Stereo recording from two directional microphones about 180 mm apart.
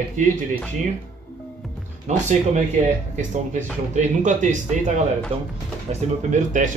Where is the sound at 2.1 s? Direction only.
40° right (ahead or behind).